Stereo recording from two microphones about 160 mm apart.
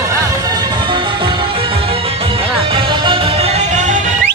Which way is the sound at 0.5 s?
25° right (ahead or behind).